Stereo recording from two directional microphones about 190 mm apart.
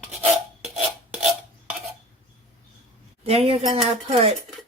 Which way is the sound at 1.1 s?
Centre (ahead or behind).